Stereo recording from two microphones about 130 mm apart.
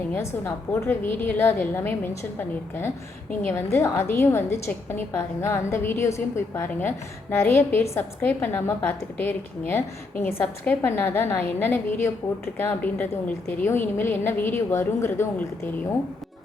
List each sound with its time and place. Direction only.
0.1 s a woman's voice: 20° left (ahead or behind)